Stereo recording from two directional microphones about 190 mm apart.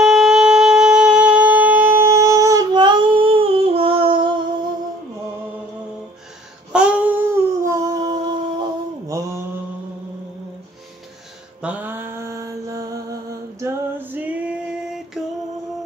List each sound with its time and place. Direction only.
0.0 s shofar: centre (ahead or behind); by 4.4 s 25° right (ahead or behind)
6.7 s a sound: 5° right (ahead or behind)
11.6 s mantra: 10° right (ahead or behind)